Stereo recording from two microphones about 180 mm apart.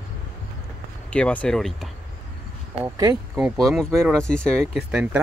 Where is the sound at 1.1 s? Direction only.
5° left (ahead or behind).